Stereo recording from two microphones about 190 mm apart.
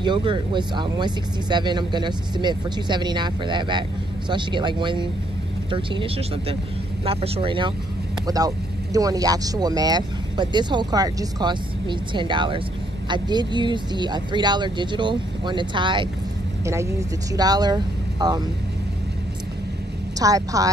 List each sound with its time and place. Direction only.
0.0 s speech: 25° right (ahead or behind)
16.6 s speech: 15° right (ahead or behind)
20.2 s a woman's voice: 20° right (ahead or behind)